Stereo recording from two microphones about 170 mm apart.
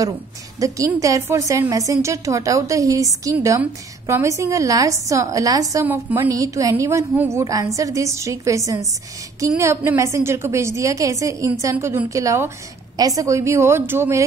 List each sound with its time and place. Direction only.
0.6 s a woman's voice: 20° right (ahead or behind)